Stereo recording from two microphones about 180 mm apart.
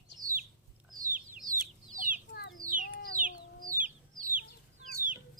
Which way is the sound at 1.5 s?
50° right (ahead or behind).